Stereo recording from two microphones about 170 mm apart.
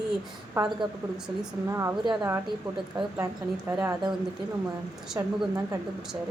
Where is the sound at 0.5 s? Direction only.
20° right (ahead or behind).